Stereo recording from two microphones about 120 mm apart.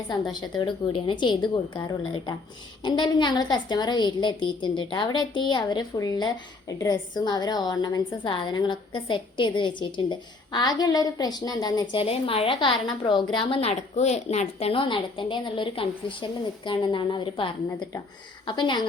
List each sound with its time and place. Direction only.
0.3 s a woman's voice: 35° left (ahead or behind)
11.9 s a woman's voice: 50° left (ahead or behind)